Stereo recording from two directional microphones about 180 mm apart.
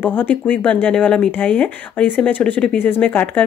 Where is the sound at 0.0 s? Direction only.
10° left (ahead or behind).